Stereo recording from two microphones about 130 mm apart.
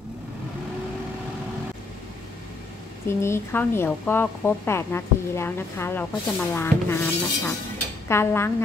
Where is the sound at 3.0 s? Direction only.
20° left (ahead or behind).